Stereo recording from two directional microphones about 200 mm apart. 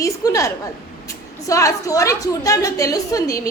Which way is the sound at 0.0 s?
15° left (ahead or behind).